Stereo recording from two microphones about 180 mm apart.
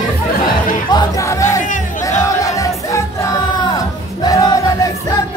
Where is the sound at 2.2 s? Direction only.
20° left (ahead or behind).